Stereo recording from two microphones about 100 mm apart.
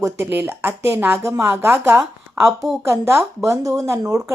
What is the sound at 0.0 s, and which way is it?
Speech, 25° right (ahead or behind).